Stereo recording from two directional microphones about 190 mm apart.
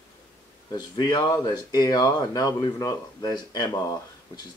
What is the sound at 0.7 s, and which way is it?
Speech, 20° left (ahead or behind).